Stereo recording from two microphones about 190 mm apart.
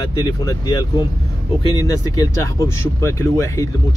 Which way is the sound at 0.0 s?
25° left (ahead or behind).